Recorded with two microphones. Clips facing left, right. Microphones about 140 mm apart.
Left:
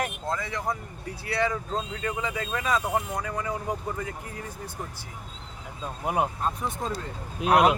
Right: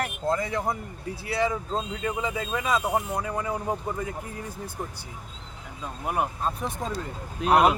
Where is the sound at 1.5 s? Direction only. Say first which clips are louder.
Right 1 dB; 20° right (ahead or behind).